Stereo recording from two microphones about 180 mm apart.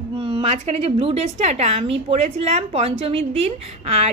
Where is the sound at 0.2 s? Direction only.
30° right (ahead or behind).